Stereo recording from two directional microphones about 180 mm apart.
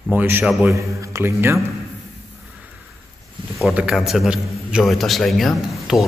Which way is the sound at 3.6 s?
Centre (ahead or behind).